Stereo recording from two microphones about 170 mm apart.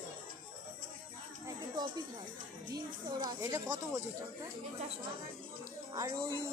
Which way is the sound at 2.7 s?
25° right (ahead or behind).